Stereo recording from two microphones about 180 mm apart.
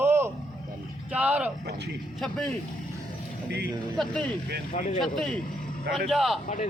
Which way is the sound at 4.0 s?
5° left (ahead or behind).